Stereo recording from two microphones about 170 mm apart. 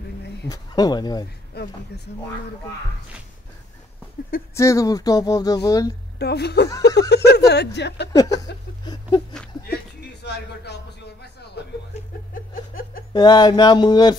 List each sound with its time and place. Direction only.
0.5 s speech: 25° left (ahead or behind)
1.5 s speech: 70° left (ahead or behind)
4.6 s speech: 20° left (ahead or behind)
6.1 s speech: 75° left (ahead or behind); by 8.1 s 90° left
8.2 s speech: 20° left (ahead or behind)
10.2 s speech: 80° left
13.1 s speech: 25° left (ahead or behind)